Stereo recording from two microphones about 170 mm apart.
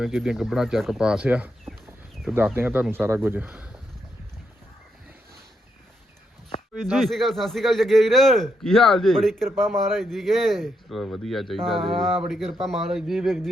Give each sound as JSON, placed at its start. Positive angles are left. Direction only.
{"t": 0.0, "sound": "speech", "side_deg": 0}
{"t": 6.8, "sound": "a man's voice", "side_deg": 0}